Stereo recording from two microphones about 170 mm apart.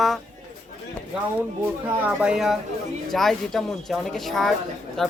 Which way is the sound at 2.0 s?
5° right (ahead or behind).